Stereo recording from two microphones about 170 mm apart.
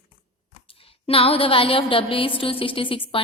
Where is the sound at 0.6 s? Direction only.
35° left (ahead or behind).